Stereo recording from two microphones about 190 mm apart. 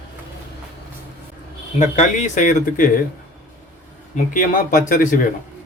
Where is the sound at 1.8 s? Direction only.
40° left (ahead or behind).